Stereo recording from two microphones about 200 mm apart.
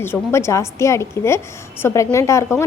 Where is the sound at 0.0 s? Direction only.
10° left (ahead or behind).